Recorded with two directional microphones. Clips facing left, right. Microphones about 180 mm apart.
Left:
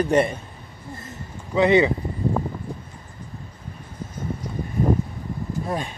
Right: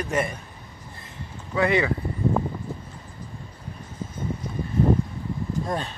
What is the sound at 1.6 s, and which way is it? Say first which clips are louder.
Speech: left 5 dB; 20° left (ahead or behind).